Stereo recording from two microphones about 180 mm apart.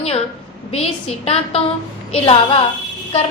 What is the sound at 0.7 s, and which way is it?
A woman's voice, 35° left (ahead or behind).